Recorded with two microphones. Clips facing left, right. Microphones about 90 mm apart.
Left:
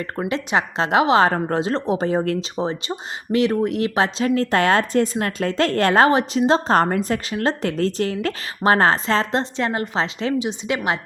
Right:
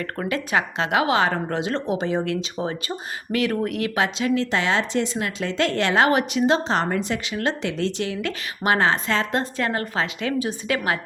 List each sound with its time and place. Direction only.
0.3 s a woman's voice: 30° left (ahead or behind)